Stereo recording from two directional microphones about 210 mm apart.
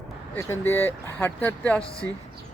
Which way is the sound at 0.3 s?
15° left (ahead or behind).